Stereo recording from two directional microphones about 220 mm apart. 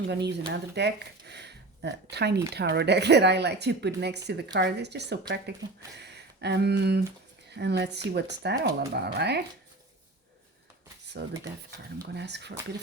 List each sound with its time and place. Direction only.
0.1 s speech: 50° right (ahead or behind)
11.2 s speech: 50° right (ahead or behind)